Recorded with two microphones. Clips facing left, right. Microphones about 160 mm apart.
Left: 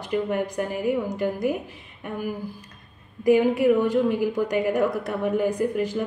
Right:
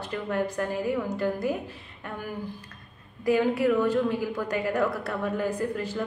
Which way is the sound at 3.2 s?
15° left (ahead or behind).